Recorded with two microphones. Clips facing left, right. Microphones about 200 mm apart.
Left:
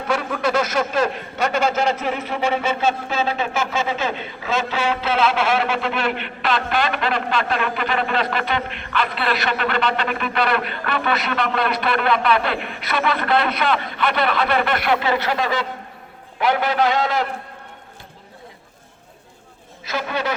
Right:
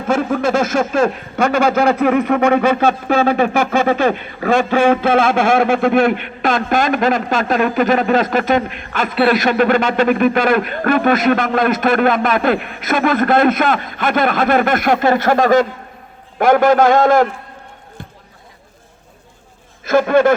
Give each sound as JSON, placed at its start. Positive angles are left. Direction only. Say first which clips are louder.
{"t": 0.1, "sound": "speech", "louder": "right 6 dB", "side_deg": -45}
{"t": 19.8, "sound": "speech", "louder": "right 13 dB", "side_deg": -50}